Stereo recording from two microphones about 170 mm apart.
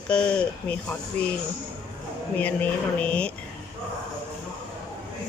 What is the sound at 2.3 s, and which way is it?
Speech, 10° left (ahead or behind).